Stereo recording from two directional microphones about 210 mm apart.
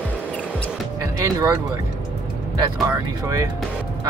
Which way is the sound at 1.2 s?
15° right (ahead or behind).